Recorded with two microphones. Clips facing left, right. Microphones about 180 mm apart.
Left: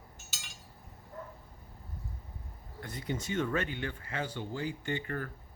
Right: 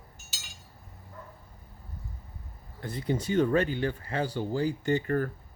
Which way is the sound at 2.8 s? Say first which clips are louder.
Right 7 dB; 30° right (ahead or behind).